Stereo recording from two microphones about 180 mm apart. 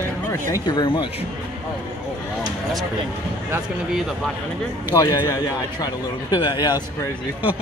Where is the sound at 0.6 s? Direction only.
25° left (ahead or behind).